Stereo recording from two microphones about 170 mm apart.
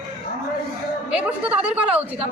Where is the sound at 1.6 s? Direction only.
5° right (ahead or behind).